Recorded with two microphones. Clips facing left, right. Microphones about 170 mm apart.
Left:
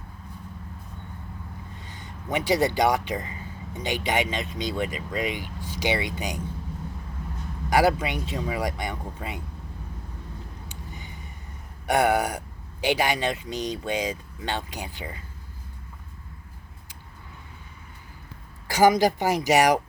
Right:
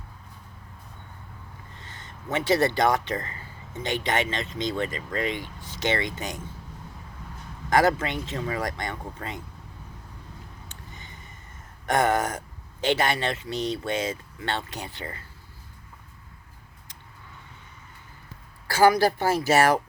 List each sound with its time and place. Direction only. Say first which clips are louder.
1.8 s speech: left 2 dB; 15° left (ahead or behind)
7.7 s speech: even; 10° left (ahead or behind)
10.7 s a sound: left 4 dB; 10° left (ahead or behind)
11.9 s speech: left 1 dB; 10° left (ahead or behind)
18.7 s speech: even; 15° left (ahead or behind)